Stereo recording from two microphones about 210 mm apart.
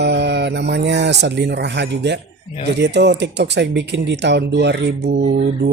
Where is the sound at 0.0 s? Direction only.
55° right (ahead or behind).